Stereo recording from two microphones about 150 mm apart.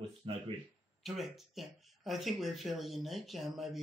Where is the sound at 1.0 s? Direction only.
Centre (ahead or behind).